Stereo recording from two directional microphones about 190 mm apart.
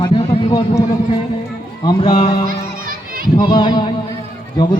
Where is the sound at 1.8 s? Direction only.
20° left (ahead or behind).